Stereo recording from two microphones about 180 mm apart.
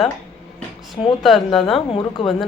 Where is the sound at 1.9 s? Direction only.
25° left (ahead or behind).